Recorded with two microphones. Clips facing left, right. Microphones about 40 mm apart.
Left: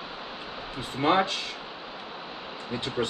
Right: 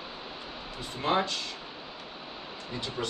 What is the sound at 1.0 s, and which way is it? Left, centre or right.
Speech, left.